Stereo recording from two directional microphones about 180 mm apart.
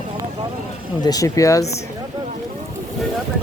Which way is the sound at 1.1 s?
20° left (ahead or behind).